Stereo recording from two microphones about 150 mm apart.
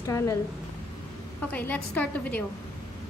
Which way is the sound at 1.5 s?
10° left (ahead or behind).